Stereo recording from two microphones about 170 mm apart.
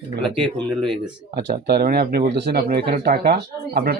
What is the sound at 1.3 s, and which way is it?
Speech, 70° right (ahead or behind).